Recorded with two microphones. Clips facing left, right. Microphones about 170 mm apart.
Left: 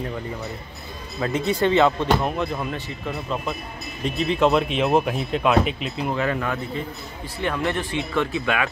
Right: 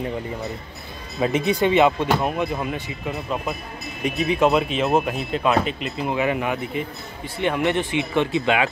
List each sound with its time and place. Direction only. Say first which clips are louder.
1.2 s speech: right 2 dB; 15° right (ahead or behind)
4.0 s speech: right 1 dB; 10° right (ahead or behind)
6.1 s speech: right 3 dB; 10° right (ahead or behind)